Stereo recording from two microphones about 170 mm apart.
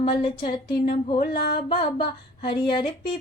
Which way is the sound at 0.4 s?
55° left (ahead or behind).